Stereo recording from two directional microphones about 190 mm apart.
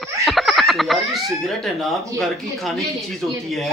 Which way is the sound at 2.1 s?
Centre (ahead or behind).